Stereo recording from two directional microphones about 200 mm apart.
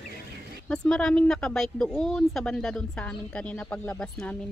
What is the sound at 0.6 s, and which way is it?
Speech, 5° left (ahead or behind).